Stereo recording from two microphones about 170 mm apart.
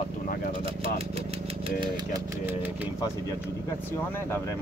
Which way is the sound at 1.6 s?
30° right (ahead or behind).